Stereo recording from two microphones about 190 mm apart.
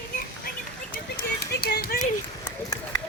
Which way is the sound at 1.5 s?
55° left (ahead or behind).